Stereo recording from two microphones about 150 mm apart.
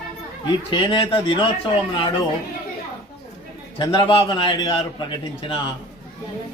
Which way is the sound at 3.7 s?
30° left (ahead or behind).